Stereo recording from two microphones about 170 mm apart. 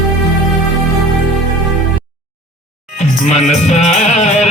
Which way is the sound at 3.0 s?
40° left (ahead or behind).